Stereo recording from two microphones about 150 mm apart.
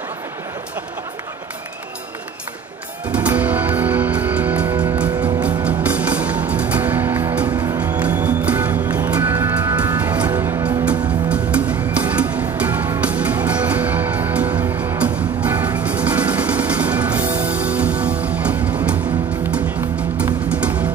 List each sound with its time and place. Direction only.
3.1 s music: 10° right (ahead or behind)
7.4 s music: 25° right (ahead or behind)
8.2 s music: 10° right (ahead or behind)